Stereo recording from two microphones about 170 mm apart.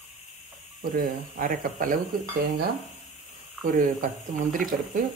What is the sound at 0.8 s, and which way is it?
Speech, 60° right (ahead or behind).